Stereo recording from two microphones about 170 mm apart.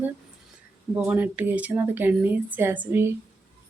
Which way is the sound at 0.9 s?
10° right (ahead or behind).